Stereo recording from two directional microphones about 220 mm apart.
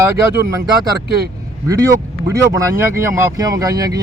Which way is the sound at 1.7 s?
15° right (ahead or behind).